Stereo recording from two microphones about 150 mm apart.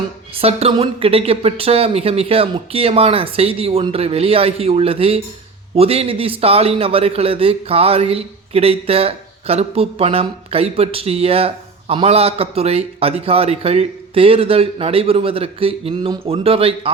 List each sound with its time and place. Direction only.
0.3 s a man's voice: 40° right (ahead or behind)